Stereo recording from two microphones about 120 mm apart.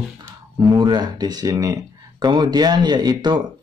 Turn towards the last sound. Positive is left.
turn(degrees=-40)  # may be behind; listen again after turning